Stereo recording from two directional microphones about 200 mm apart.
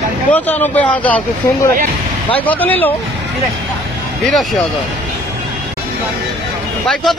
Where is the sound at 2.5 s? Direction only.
10° left (ahead or behind).